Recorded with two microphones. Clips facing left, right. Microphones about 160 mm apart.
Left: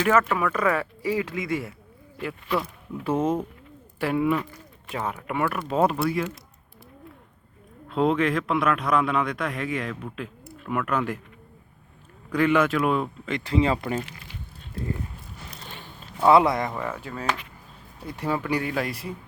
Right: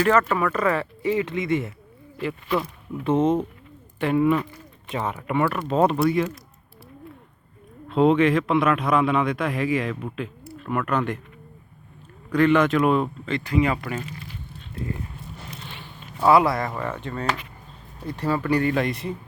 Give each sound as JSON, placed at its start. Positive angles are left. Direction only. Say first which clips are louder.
{"t": 0.0, "sound": "a man's voice", "louder": "right 2 dB", "side_deg": 5}
{"t": 3.2, "sound": "speech", "louder": "right 4 dB", "side_deg": -20}
{"t": 4.0, "sound": "a man's voice", "louder": "right 3 dB", "side_deg": 5}
{"t": 7.9, "sound": "a man's voice", "louder": "right 4 dB", "side_deg": 0}
{"t": 12.3, "sound": "a man's voice", "louder": "right 3 dB", "side_deg": 10}
{"t": 13.4, "sound": "speech", "louder": "even", "side_deg": 25}
{"t": 15.5, "sound": "a sound", "louder": "right 2 dB", "side_deg": 40}
{"t": 16.2, "sound": "speech", "louder": "even", "side_deg": 20}
{"t": 16.7, "sound": "speech", "louder": "right 2 dB", "side_deg": 5}